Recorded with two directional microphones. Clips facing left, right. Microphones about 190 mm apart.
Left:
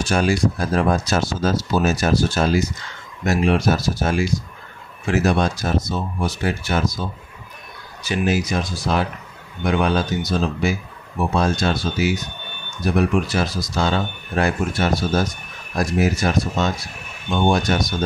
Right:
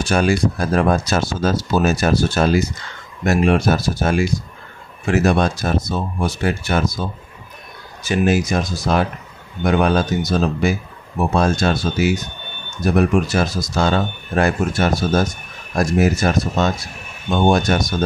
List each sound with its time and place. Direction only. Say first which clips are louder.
0.1 s speech: right 2 dB; 55° right (ahead or behind)